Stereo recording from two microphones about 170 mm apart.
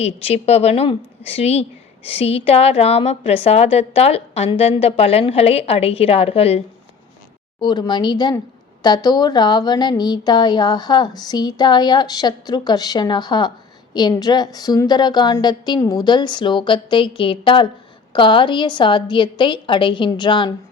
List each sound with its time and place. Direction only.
0.0 s a woman's voice: 35° left (ahead or behind)
7.6 s a woman's voice: 25° left (ahead or behind)